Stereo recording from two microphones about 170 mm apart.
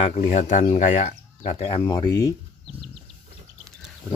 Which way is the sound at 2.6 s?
35° left (ahead or behind).